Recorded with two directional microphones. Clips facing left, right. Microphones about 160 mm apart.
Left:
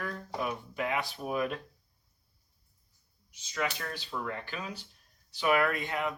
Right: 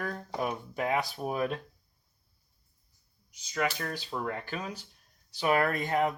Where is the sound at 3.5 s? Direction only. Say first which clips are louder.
Right 3 dB; 35° right (ahead or behind).